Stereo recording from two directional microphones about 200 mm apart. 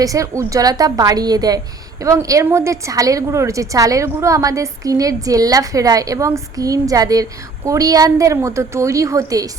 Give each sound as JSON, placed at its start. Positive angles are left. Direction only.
{"t": 0.0, "sound": "a woman's voice", "side_deg": -15}